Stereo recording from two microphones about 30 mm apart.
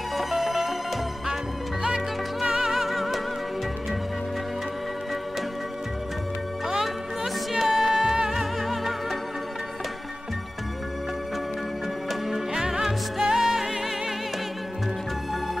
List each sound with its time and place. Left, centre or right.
0.1 s music: centre
2.5 s music: centre
2.8 s music: centre
7.5 s music: centre
12.1 s music: centre